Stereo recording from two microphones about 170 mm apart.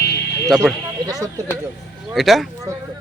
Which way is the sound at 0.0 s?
70° left (ahead or behind).